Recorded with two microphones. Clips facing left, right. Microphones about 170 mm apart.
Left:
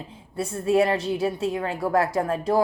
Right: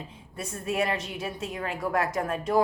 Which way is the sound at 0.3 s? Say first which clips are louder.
Left 8 dB; 30° left (ahead or behind).